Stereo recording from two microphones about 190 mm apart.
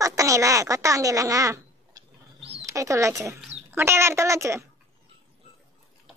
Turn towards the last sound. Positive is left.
turn(degrees=-15)  # may be behind; listen again after turning